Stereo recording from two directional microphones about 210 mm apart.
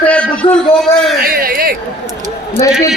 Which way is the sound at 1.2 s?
45° right (ahead or behind).